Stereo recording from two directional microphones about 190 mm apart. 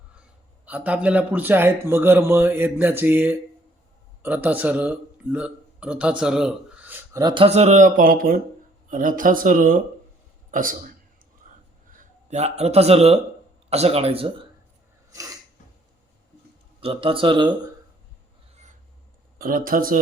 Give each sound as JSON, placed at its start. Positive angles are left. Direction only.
{"t": 0.6, "sound": "a man's voice", "side_deg": -5}
{"t": 7.2, "sound": "speech", "side_deg": -25}
{"t": 11.9, "sound": "speech", "side_deg": -35}
{"t": 16.8, "sound": "speech", "side_deg": -30}
{"t": 19.4, "sound": "speech", "side_deg": -50}